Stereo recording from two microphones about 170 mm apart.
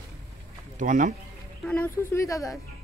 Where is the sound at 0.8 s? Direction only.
50° right (ahead or behind).